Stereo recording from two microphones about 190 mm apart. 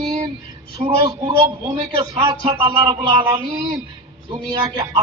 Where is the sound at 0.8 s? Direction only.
25° right (ahead or behind).